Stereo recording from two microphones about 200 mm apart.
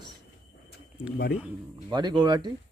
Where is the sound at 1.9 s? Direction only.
20° right (ahead or behind).